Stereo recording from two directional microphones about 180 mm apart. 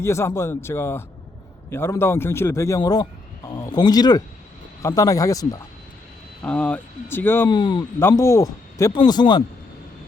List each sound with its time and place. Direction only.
0.0 s a man's voice: 15° left (ahead or behind)
6.4 s a man's voice: 5° left (ahead or behind)
7.5 s speech: 25° left (ahead or behind)